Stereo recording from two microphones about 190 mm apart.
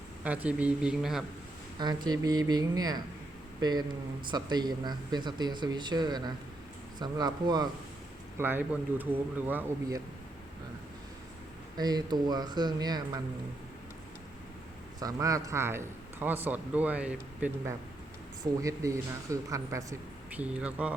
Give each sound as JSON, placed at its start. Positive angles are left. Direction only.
{"t": 0.3, "sound": "a man's voice", "side_deg": -5}
{"t": 1.8, "sound": "speech", "side_deg": -20}
{"t": 8.4, "sound": "a man's voice", "side_deg": -10}
{"t": 11.8, "sound": "speech", "side_deg": -20}
{"t": 14.9, "sound": "a man's voice", "side_deg": -20}